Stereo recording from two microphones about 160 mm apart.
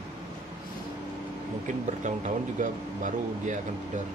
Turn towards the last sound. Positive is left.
turn(degrees=-50)  # may be behind; listen again after turning